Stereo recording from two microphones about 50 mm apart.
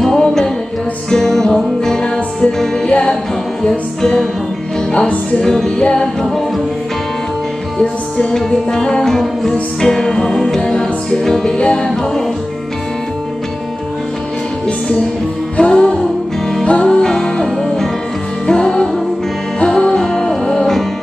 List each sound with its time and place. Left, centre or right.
0.0 s music: centre
2.9 s music: left
4.9 s music: left
5.4 s music: centre
8.3 s music: centre
15.5 s music: centre
17.0 s music: centre